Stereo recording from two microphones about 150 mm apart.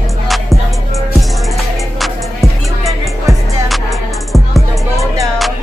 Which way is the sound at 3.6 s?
Centre (ahead or behind).